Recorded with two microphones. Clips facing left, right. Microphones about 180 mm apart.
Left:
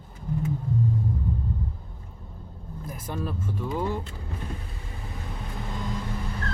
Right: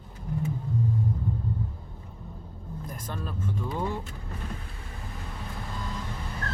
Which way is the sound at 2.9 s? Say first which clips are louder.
Left 5 dB; 10° left (ahead or behind).